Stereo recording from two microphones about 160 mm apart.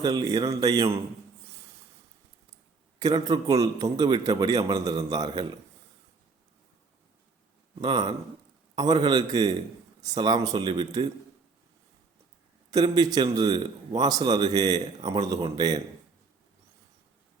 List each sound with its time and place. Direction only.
0.0 s a man's voice: 25° right (ahead or behind)
3.0 s a man's voice: 25° right (ahead or behind)
7.8 s a man's voice: 25° right (ahead or behind)
12.7 s a man's voice: 25° right (ahead or behind)